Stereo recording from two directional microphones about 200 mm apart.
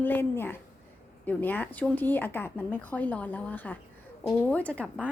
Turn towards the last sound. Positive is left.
turn(degrees=5)  # may be behind; listen again after turning